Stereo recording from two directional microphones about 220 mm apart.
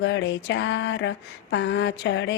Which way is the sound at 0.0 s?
55° left (ahead or behind).